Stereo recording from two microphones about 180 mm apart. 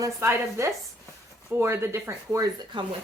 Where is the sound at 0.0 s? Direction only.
15° right (ahead or behind).